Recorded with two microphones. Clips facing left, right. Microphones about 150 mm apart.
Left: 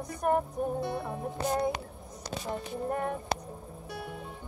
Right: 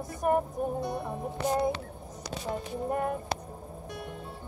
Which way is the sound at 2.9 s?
5° right (ahead or behind).